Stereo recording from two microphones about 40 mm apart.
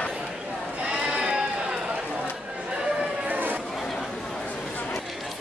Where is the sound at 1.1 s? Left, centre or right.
Right.